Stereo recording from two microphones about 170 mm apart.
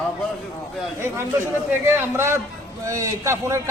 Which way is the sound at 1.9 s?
15° right (ahead or behind).